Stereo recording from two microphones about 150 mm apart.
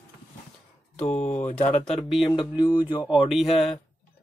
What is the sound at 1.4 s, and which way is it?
Speech, 50° left (ahead or behind).